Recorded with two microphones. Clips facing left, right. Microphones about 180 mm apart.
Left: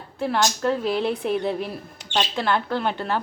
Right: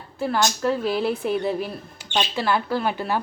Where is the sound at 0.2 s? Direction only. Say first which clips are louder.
Even; centre (ahead or behind).